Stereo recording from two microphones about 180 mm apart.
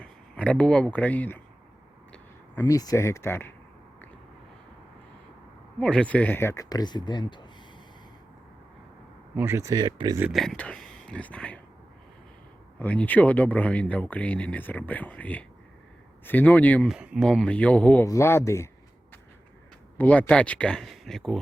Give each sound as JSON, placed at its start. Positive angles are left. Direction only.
{"t": 0.0, "sound": "speech", "side_deg": 5}
{"t": 2.6, "sound": "speech", "side_deg": 20}
{"t": 5.8, "sound": "speech", "side_deg": 5}
{"t": 9.3, "sound": "speech", "side_deg": -10}
{"t": 10.3, "sound": "speech", "side_deg": 0}
{"t": 12.8, "sound": "speech", "side_deg": 10}
{"t": 16.9, "sound": "speech", "side_deg": 0}
{"t": 20.0, "sound": "speech", "side_deg": 10}